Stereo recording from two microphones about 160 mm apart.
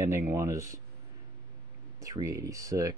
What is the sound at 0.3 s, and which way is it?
Speech, 20° right (ahead or behind).